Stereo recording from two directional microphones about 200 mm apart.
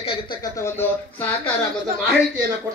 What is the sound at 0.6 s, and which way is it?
Speech, 10° left (ahead or behind).